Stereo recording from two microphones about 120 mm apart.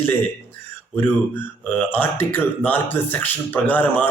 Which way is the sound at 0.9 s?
15° left (ahead or behind).